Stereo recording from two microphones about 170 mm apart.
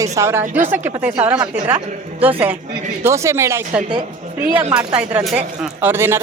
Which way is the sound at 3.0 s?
15° right (ahead or behind).